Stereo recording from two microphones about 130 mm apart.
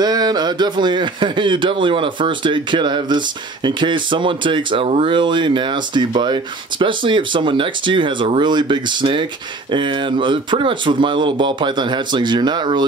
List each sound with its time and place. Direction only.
0.0 s speech: 30° right (ahead or behind)